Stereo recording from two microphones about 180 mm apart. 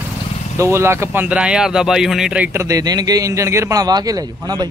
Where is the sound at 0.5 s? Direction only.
15° right (ahead or behind).